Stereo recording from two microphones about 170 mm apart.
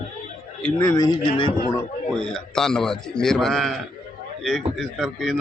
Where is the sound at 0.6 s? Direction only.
10° left (ahead or behind); by 1.5 s 25° left (ahead or behind).